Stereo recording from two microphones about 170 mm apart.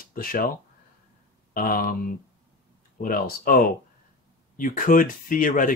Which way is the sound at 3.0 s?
55° left (ahead or behind).